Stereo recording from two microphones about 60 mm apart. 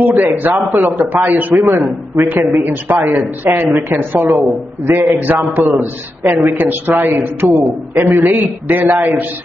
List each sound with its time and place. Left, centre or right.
0.0 s a man's voice: right
1.5 s speech: right
2.2 s a man's voice: right